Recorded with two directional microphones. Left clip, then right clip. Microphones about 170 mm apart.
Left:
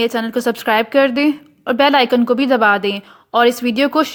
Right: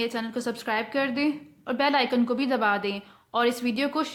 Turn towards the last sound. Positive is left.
turn(degrees=45)  # may be behind; listen again after turning